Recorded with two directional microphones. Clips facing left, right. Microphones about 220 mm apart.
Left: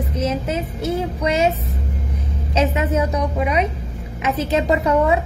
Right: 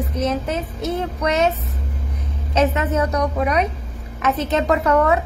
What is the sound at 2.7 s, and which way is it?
A woman's voice, 10° left (ahead or behind).